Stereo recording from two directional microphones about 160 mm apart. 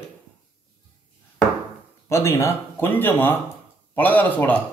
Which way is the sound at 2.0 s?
15° left (ahead or behind).